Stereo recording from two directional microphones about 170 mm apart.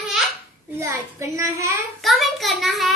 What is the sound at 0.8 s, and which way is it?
A child's voice, 15° right (ahead or behind).